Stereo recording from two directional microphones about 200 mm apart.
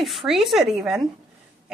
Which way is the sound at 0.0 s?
Centre (ahead or behind).